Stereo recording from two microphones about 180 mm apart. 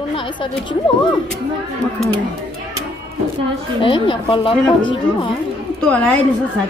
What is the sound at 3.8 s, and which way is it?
Speech, 30° left (ahead or behind).